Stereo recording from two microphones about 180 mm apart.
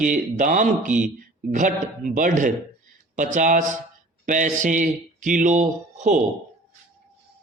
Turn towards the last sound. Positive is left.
turn(degrees=-40)  # may be behind; listen again after turning